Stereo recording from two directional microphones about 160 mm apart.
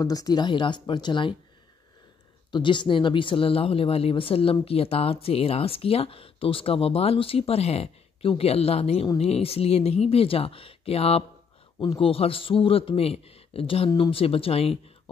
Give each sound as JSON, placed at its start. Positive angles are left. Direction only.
{"t": 0.0, "sound": "speech", "side_deg": 20}
{"t": 2.5, "sound": "speech", "side_deg": 30}